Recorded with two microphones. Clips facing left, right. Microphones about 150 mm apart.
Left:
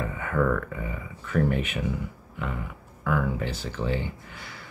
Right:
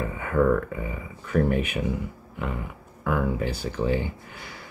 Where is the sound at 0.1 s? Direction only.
20° right (ahead or behind).